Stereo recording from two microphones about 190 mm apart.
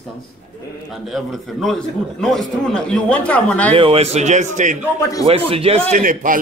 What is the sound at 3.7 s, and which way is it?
Speech, 30° right (ahead or behind).